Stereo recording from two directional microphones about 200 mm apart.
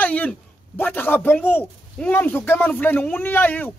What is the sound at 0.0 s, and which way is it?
Speech, 5° left (ahead or behind).